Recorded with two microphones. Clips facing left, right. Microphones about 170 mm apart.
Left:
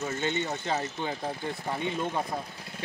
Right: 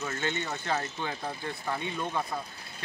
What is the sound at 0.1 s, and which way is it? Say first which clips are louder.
Speech: left 3 dB; 20° left (ahead or behind).